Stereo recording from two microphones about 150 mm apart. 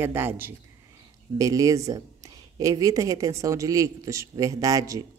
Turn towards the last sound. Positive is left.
turn(degrees=-20)  # may be behind; listen again after turning